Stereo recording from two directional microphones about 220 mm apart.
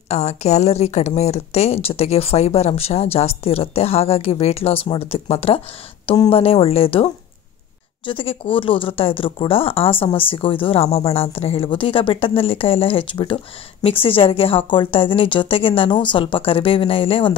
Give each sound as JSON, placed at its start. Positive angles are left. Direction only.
{"t": 0.1, "sound": "speech", "side_deg": 30}